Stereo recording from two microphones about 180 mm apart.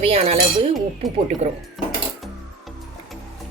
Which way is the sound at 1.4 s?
40° right (ahead or behind).